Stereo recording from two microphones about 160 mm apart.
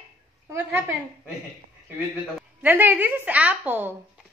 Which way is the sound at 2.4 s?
10° right (ahead or behind).